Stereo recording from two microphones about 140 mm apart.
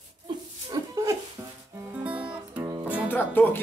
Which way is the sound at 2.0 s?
10° right (ahead or behind).